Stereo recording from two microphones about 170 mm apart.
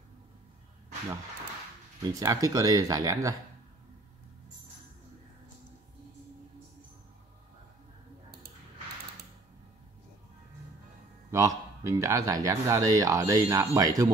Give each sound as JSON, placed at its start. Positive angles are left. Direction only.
{"t": 2.1, "sound": "speech", "side_deg": -20}
{"t": 11.3, "sound": "speech", "side_deg": -20}